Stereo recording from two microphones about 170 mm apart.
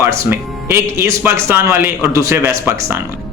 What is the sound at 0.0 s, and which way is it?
Speech, 15° right (ahead or behind).